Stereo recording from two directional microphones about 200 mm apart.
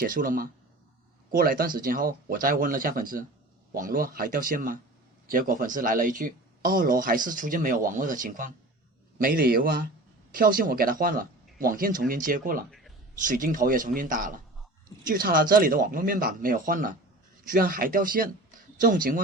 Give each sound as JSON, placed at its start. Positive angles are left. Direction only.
{"t": 0.0, "sound": "speech", "side_deg": -45}